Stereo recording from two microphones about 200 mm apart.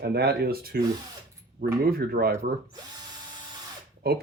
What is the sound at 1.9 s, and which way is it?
Speech, 50° right (ahead or behind).